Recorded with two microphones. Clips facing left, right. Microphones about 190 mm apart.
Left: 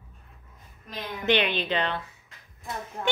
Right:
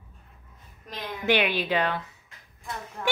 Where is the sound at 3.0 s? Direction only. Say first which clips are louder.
Even; 30° left (ahead or behind).